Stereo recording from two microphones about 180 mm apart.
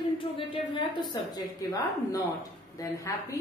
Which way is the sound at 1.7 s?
20° left (ahead or behind).